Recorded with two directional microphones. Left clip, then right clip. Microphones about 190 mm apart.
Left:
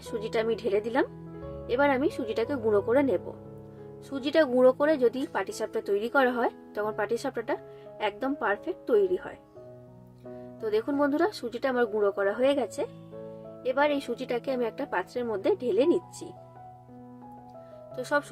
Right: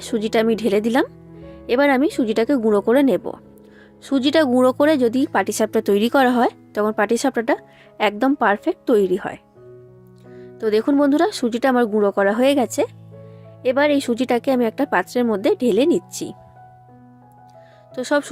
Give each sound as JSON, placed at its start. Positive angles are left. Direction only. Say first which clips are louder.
{"t": 0.0, "sound": "speech", "louder": "right 10 dB", "side_deg": -50}
{"t": 10.6, "sound": "speech", "louder": "right 9 dB", "side_deg": -50}
{"t": 17.9, "sound": "speech", "louder": "right 8 dB", "side_deg": -45}